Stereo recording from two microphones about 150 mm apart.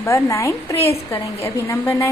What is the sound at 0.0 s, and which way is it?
A woman's voice, 15° left (ahead or behind).